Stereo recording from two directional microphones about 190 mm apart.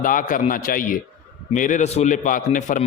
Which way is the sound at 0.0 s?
45° left (ahead or behind).